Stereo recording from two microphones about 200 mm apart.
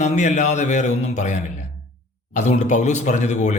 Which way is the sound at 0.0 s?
35° left (ahead or behind).